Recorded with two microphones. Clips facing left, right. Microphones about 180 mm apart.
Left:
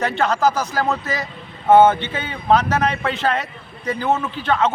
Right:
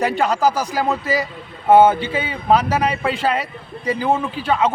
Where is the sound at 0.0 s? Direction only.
10° right (ahead or behind).